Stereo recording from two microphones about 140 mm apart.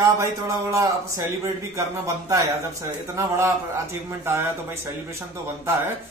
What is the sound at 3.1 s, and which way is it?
Speech, 20° right (ahead or behind).